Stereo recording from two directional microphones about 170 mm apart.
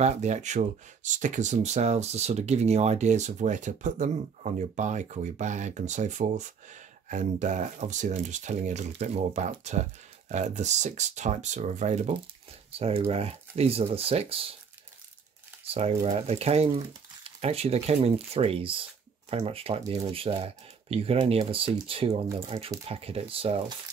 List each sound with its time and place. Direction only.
0.0 s speech: 40° right (ahead or behind)
15.6 s speech: 35° right (ahead or behind)